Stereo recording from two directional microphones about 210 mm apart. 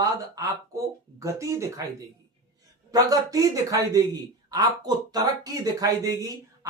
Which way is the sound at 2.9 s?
15° right (ahead or behind).